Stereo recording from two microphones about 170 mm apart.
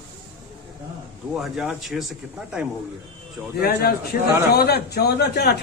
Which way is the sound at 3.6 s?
65° left (ahead or behind).